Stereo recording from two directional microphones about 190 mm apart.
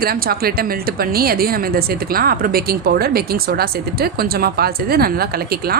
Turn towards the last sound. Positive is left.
turn(degrees=-55)  # may be behind; listen again after turning